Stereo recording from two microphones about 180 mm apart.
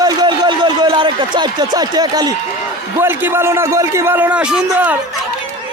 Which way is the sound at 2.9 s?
10° right (ahead or behind).